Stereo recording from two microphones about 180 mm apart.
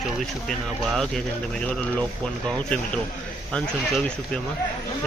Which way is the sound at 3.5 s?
5° left (ahead or behind).